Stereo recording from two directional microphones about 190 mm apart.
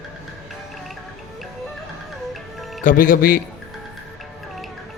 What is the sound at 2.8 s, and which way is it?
Speech, 45° left (ahead or behind).